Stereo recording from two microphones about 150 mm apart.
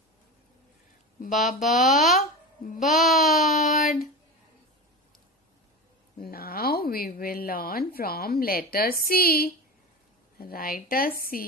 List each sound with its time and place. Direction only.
1.2 s speech: 65° left (ahead or behind)
1.6 s child singing: centre (ahead or behind)
6.1 s a woman's voice: 80° left